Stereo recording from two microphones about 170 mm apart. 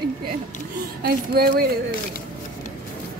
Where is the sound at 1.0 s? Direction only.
65° right (ahead or behind).